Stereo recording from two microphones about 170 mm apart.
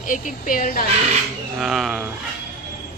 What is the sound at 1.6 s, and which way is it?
Speech, centre (ahead or behind).